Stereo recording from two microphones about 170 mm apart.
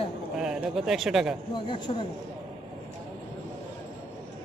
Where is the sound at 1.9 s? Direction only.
30° left (ahead or behind).